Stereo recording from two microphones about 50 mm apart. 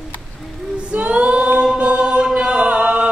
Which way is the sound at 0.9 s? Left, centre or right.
Right.